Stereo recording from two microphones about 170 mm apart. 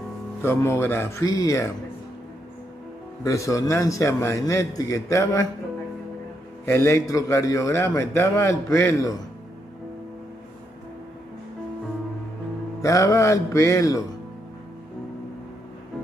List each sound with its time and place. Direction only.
0.4 s a man's voice: 15° left (ahead or behind)
3.3 s a man's voice: 20° left (ahead or behind)
6.6 s a man's voice: 20° left (ahead or behind)
12.8 s music: 20° left (ahead or behind)